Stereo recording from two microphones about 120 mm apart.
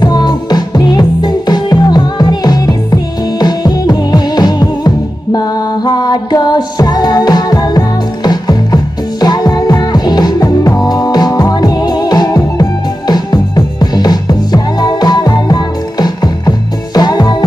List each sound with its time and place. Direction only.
0.0 s music: 35° left (ahead or behind)